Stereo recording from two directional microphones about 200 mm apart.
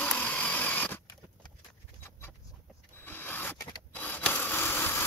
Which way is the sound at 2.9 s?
10° left (ahead or behind).